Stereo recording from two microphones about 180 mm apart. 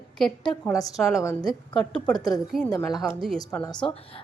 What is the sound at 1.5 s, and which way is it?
Speech, 5° left (ahead or behind).